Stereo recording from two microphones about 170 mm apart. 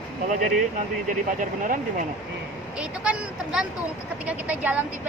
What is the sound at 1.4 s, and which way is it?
Speech, 50° right (ahead or behind).